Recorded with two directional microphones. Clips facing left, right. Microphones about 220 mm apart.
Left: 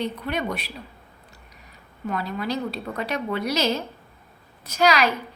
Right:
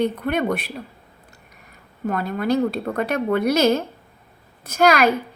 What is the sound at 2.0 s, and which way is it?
A woman's voice, 50° right (ahead or behind).